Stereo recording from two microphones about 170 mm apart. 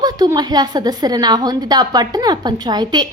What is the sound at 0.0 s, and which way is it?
A woman's voice, 20° right (ahead or behind).